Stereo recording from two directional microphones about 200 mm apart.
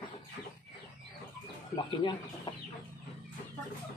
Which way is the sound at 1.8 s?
25° left (ahead or behind).